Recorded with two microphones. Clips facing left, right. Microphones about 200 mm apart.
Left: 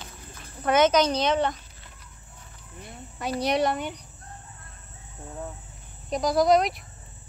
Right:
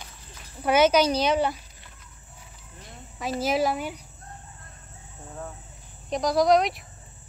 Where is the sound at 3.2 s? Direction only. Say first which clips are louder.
Even; centre (ahead or behind).